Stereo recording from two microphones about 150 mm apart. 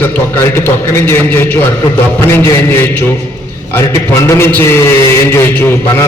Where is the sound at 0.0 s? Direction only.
15° left (ahead or behind).